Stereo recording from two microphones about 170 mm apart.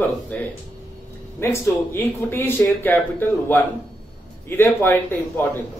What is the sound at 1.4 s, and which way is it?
Speech, 15° left (ahead or behind).